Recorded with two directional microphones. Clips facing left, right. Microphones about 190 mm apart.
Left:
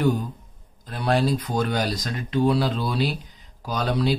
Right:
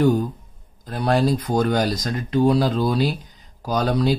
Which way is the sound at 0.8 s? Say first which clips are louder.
Right 3 dB; 40° right (ahead or behind).